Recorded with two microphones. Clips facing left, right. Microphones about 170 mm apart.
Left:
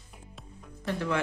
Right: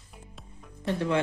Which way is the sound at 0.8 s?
30° right (ahead or behind).